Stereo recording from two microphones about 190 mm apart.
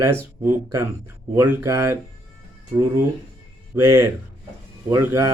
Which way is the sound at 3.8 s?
15° right (ahead or behind).